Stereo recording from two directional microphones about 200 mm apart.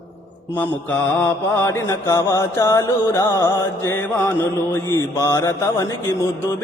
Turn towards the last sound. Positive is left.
turn(degrees=15)  # may be behind; listen again after turning